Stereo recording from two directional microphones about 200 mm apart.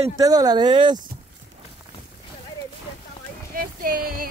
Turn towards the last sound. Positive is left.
turn(degrees=-45)  # may be behind; listen again after turning